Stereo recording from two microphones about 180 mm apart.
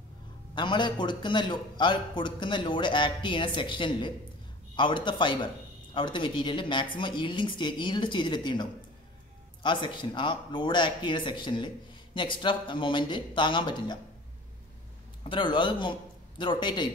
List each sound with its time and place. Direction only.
0.6 s speech: 25° left (ahead or behind)
15.2 s a man's voice: 25° left (ahead or behind)